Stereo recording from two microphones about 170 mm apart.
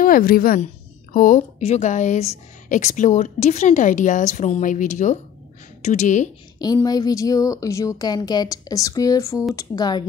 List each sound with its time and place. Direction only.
0.0 s a woman's voice: 60° left (ahead or behind)
6.6 s speech: 20° left (ahead or behind)